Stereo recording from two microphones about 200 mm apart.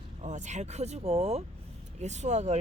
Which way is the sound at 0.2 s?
35° right (ahead or behind).